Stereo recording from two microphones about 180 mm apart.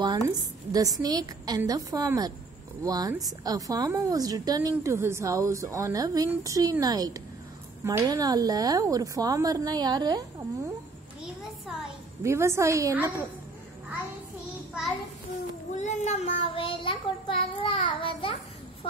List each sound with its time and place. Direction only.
0.0 s a sound: 20° right (ahead or behind)
1.0 s a woman's voice: 20° right (ahead or behind)
12.2 s a woman's voice: 15° right (ahead or behind)
15.7 s child singing: 40° left (ahead or behind)